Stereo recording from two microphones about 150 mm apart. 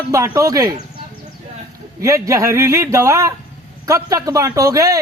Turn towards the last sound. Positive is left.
turn(degrees=-20)  # may be behind; listen again after turning